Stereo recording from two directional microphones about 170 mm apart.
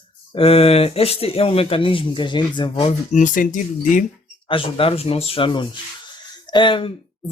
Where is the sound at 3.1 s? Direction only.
50° left (ahead or behind).